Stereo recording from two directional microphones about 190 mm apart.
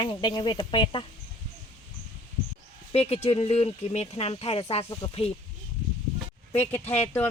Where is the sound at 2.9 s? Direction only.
30° left (ahead or behind).